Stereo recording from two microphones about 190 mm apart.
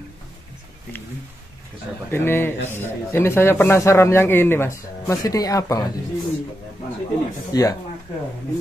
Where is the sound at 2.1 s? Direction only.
10° left (ahead or behind).